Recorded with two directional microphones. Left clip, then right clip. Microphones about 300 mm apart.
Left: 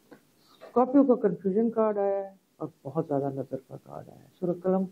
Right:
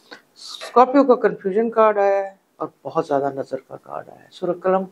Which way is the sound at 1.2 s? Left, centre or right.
Centre.